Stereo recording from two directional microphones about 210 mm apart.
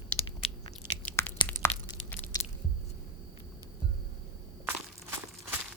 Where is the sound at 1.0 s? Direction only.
10° left (ahead or behind).